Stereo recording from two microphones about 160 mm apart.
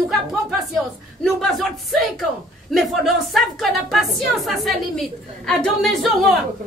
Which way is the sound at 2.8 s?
Centre (ahead or behind).